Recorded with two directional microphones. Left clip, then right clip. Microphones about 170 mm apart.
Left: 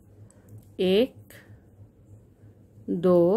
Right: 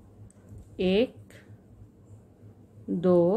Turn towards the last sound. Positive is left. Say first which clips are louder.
# left 2 dB
turn(degrees=35)  # may be behind; listen again after turning